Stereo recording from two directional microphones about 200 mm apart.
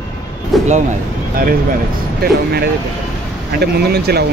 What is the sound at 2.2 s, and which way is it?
Speech, 50° right (ahead or behind).